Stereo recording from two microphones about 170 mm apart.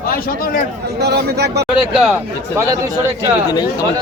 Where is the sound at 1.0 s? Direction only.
70° right (ahead or behind).